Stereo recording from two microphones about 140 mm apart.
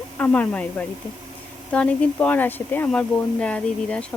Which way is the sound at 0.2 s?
10° left (ahead or behind).